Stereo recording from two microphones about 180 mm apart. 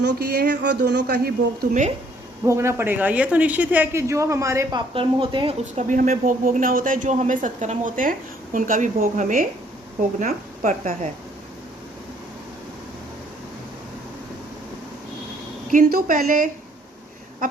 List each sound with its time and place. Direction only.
0.0 s speech: 65° right (ahead or behind)
2.4 s speech: 15° right (ahead or behind)
4.9 s a woman's voice: 30° right (ahead or behind)
15.7 s speech: 50° right (ahead or behind)